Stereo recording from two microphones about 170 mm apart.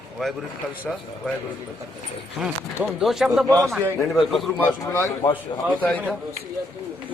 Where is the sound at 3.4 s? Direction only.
20° right (ahead or behind).